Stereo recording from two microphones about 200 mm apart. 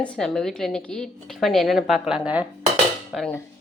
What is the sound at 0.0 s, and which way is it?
A woman's voice, 5° left (ahead or behind).